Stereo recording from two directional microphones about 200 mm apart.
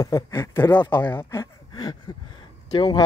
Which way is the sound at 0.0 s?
15° left (ahead or behind).